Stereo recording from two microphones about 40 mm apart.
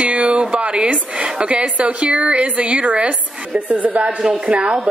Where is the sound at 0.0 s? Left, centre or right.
Right.